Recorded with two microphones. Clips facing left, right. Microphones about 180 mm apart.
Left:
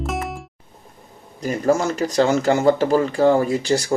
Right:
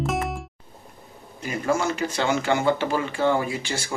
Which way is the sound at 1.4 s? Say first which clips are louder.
Left 5 dB; 35° left (ahead or behind).